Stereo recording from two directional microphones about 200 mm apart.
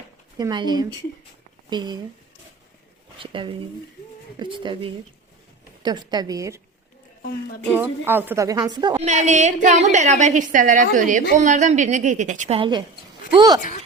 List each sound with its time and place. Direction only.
0.3 s a woman's voice: 20° right (ahead or behind)
3.2 s a woman's voice: 25° right (ahead or behind)
7.7 s a woman's voice: 10° right (ahead or behind)
9.0 s a woman's voice: 35° right (ahead or behind); by 13.6 s 20° right (ahead or behind)
13.6 s speech: 45° left (ahead or behind)